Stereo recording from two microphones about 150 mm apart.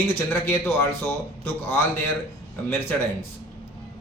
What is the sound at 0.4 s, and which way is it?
Speech, 15° left (ahead or behind).